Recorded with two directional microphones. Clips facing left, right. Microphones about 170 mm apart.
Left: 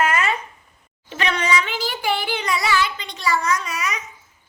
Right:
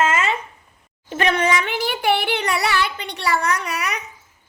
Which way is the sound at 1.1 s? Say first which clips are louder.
Right 3 dB; 50° right (ahead or behind).